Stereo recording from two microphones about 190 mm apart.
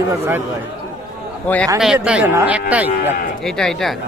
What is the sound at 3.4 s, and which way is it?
Speech, centre (ahead or behind).